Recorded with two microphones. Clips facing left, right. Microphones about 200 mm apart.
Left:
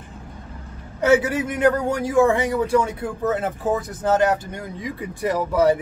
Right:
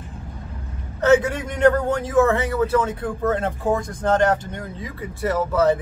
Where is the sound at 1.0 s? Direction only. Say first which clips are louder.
Right 1 dB; 10° left (ahead or behind).